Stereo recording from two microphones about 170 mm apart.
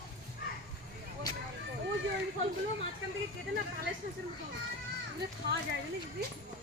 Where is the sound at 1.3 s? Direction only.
20° left (ahead or behind).